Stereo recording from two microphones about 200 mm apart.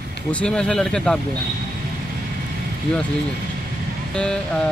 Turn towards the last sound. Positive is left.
turn(degrees=5)  # may be behind; listen again after turning